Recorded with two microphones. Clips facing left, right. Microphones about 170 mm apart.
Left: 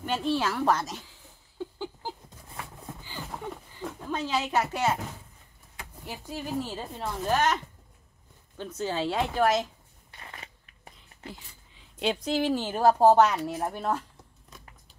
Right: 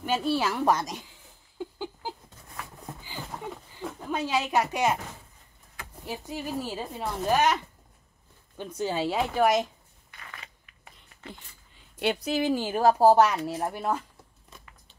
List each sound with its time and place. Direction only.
0.0 s speech: 10° right (ahead or behind)
1.6 s a sound: 15° right (ahead or behind)
4.0 s speech: 10° right (ahead or behind)
6.0 s speech: 10° right (ahead or behind)
8.5 s speech: 10° right (ahead or behind)
10.1 s a sound: 30° left (ahead or behind)
12.0 s speech: 5° right (ahead or behind)